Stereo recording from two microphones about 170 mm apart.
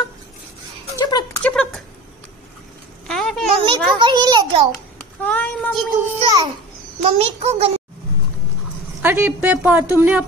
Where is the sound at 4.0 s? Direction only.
25° right (ahead or behind).